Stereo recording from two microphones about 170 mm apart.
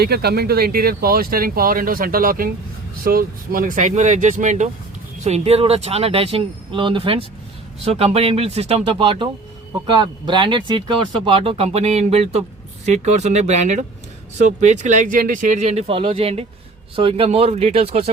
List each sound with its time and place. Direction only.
0.0 s speech: 70° right (ahead or behind); by 18.1 s 35° right (ahead or behind)